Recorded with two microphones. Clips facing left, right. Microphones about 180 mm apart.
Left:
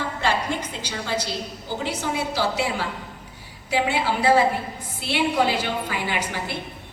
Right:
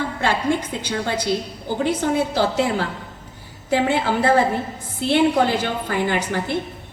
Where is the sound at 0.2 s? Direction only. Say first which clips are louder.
Right 4 dB; 55° right (ahead or behind).